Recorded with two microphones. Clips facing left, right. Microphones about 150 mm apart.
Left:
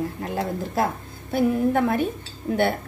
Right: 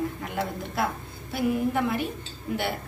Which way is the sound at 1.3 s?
50° left (ahead or behind).